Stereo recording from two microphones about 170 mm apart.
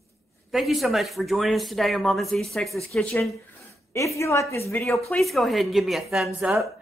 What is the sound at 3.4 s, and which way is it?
Speech, 15° left (ahead or behind).